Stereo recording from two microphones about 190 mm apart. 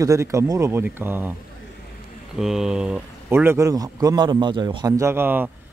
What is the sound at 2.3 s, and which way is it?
Speech, centre (ahead or behind).